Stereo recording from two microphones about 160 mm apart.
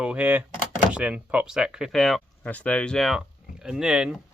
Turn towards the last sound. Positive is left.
turn(degrees=-5)  # may be behind; listen again after turning